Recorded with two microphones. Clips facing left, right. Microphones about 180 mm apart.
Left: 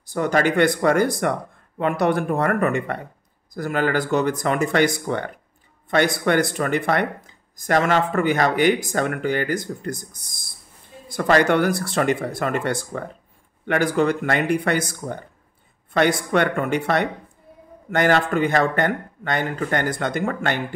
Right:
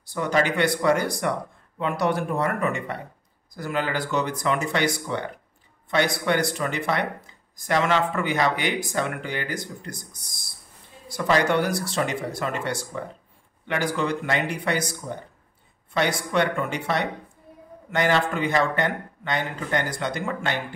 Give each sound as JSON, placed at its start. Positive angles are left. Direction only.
{"t": 0.0, "sound": "speech", "side_deg": 45}